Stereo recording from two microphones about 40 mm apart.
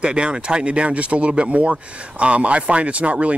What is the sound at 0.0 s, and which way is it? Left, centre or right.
Speech, right.